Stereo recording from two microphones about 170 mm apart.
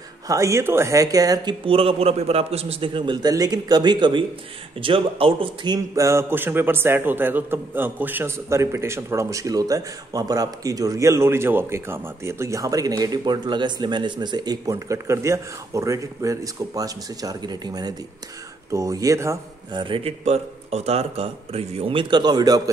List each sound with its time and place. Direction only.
0.3 s a man's voice: 15° right (ahead or behind)
19.8 s speech: 30° right (ahead or behind)